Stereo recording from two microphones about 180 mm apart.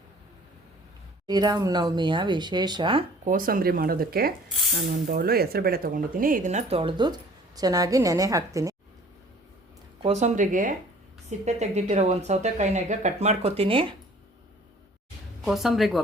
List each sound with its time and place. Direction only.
1.3 s speech: 20° right (ahead or behind)
3.2 s speech: 50° right (ahead or behind); by 8.7 s 20° right (ahead or behind)
10.0 s speech: 40° right (ahead or behind)
15.4 s speech: centre (ahead or behind)